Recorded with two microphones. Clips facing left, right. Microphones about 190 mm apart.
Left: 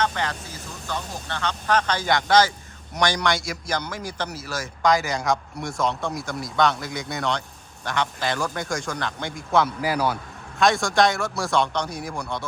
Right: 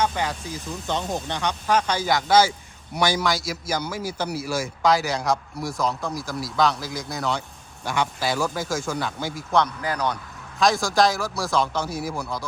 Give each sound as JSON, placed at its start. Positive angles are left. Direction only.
{"t": 0.0, "sound": "a man's voice", "side_deg": -10}